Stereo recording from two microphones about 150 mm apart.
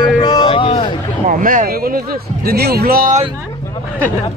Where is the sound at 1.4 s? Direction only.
65° right (ahead or behind).